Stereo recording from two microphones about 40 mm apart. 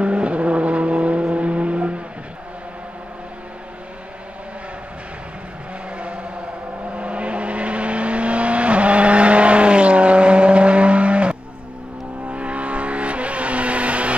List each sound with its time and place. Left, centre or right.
0.0 s vehicle: right
5.9 s vehicle: right